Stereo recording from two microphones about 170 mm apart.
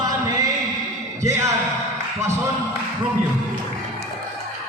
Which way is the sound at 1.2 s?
15° right (ahead or behind).